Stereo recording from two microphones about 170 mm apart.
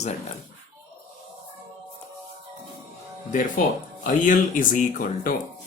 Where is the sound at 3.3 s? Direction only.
50° left (ahead or behind).